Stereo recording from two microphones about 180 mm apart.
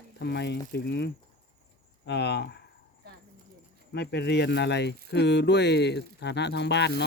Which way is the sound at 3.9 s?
70° left (ahead or behind).